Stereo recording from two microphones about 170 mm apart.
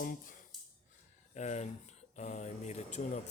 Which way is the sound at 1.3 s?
40° left (ahead or behind).